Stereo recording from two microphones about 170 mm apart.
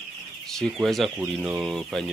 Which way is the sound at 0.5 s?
Centre (ahead or behind).